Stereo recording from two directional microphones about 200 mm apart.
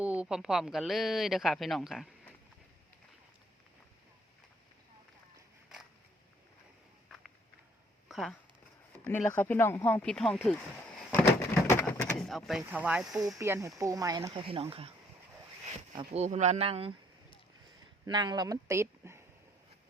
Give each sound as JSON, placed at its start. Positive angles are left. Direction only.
{"t": 0.0, "sound": "speech", "side_deg": -5}
{"t": 8.0, "sound": "a sound", "side_deg": 0}
{"t": 9.0, "sound": "speech", "side_deg": 10}
{"t": 11.7, "sound": "speech", "side_deg": 10}
{"t": 18.0, "sound": "speech", "side_deg": -20}